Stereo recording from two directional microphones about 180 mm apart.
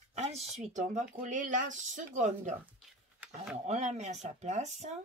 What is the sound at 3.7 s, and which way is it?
Speech, 40° right (ahead or behind).